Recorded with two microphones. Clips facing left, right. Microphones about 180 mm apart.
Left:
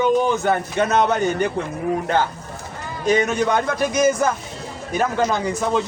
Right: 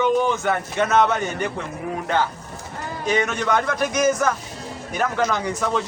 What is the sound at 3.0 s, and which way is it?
A man's voice, 40° left (ahead or behind).